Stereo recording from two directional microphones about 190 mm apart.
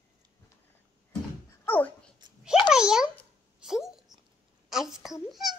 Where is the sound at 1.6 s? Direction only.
10° left (ahead or behind).